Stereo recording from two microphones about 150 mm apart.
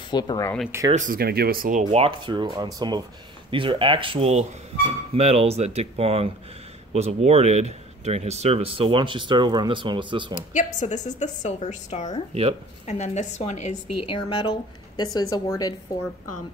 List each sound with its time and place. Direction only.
0.1 s a woman's voice: 25° left (ahead or behind)
0.9 s speech: 65° right (ahead or behind); by 10.3 s 35° right (ahead or behind)
10.5 s a woman's voice: 55° left (ahead or behind)
13.9 s a woman's voice: 35° left (ahead or behind)